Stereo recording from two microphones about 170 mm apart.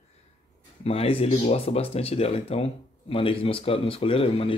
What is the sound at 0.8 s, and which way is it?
Speech, 35° left (ahead or behind).